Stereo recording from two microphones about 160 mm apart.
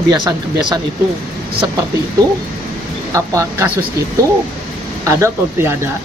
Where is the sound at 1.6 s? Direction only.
25° right (ahead or behind).